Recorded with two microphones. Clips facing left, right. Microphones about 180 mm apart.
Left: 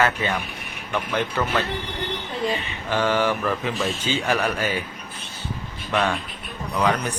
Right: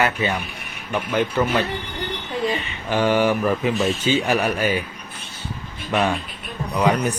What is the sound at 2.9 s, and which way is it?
Speech, 15° right (ahead or behind).